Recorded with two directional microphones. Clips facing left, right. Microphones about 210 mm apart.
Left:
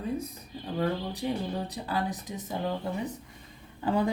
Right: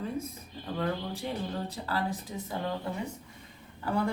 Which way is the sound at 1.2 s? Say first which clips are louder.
Left 4 dB; 20° left (ahead or behind).